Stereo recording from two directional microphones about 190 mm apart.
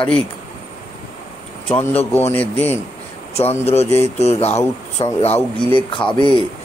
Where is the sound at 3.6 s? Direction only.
35° left (ahead or behind).